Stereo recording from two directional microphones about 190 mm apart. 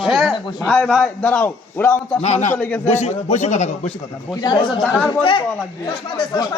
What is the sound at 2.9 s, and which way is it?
A man's voice, 35° left (ahead or behind).